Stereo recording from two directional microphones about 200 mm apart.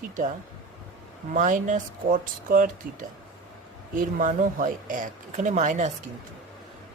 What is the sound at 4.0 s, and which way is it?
Speech, 40° right (ahead or behind).